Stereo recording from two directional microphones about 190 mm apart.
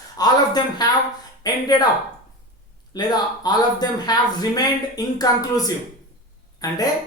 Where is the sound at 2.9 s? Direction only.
20° left (ahead or behind).